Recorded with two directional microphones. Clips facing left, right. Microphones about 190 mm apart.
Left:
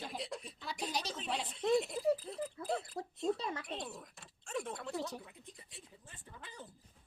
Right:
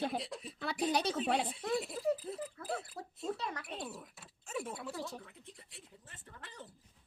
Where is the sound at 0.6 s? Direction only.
60° right (ahead or behind).